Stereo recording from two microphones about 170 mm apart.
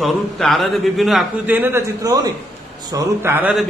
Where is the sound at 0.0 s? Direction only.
Centre (ahead or behind).